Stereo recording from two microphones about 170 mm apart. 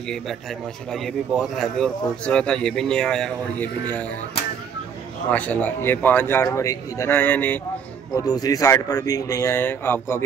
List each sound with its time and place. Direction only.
0.9 s a man's voice: centre (ahead or behind)
5.3 s speech: 10° left (ahead or behind)
8.3 s speech: 20° left (ahead or behind)